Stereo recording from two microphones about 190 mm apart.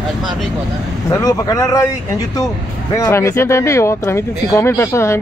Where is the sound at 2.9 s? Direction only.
15° left (ahead or behind).